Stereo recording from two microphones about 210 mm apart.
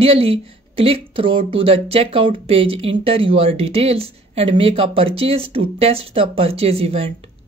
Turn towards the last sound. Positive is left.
turn(degrees=-30)  # may be behind; listen again after turning